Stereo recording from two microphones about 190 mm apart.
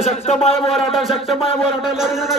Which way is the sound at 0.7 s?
Centre (ahead or behind).